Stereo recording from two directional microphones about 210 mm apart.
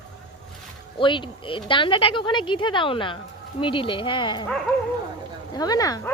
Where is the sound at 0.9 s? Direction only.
25° left (ahead or behind).